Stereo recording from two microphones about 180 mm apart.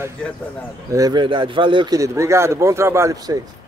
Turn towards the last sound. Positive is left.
turn(degrees=-15)  # may be behind; listen again after turning